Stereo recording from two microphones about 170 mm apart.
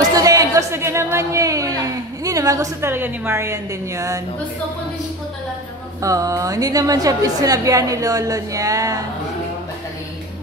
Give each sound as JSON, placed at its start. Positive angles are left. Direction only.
{"t": 0.1, "sound": "a sound", "side_deg": -20}
{"t": 2.2, "sound": "a woman's voice", "side_deg": -20}
{"t": 5.9, "sound": "a woman's voice", "side_deg": -20}